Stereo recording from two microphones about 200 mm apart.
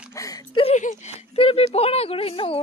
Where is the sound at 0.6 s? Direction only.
35° left (ahead or behind).